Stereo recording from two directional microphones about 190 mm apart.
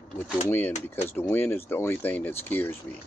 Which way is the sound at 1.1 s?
10° left (ahead or behind).